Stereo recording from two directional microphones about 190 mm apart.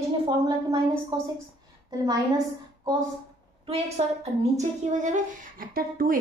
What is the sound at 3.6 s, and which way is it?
A woman's voice, 35° right (ahead or behind).